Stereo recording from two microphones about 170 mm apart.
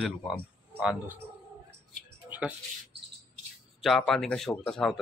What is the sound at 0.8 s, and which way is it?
Speech, 10° right (ahead or behind).